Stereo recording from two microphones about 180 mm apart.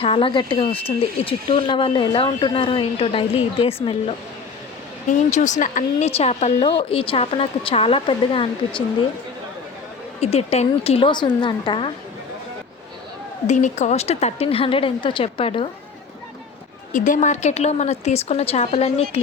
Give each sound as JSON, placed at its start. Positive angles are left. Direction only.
{"t": 0.0, "sound": "speech", "side_deg": 30}
{"t": 5.0, "sound": "speech", "side_deg": 45}
{"t": 10.2, "sound": "speech", "side_deg": 35}
{"t": 13.5, "sound": "speech", "side_deg": 40}
{"t": 16.9, "sound": "speech", "side_deg": 45}